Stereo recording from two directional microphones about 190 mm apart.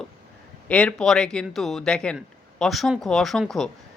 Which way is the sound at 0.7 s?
5° left (ahead or behind).